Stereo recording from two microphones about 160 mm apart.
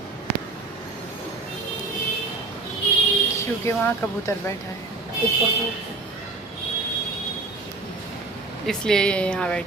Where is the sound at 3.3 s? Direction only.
15° left (ahead or behind).